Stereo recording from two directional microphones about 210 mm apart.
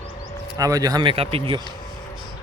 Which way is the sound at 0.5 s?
15° right (ahead or behind).